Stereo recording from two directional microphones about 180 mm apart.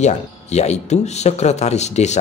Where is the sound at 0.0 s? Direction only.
40° left (ahead or behind).